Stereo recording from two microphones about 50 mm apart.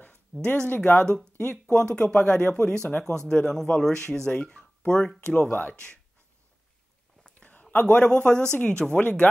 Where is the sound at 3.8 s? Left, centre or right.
Centre.